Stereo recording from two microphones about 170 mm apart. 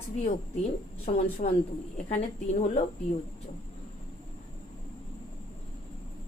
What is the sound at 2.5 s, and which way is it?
Speech, 45° left (ahead or behind).